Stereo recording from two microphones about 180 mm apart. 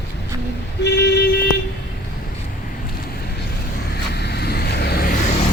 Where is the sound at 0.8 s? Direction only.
65° left (ahead or behind).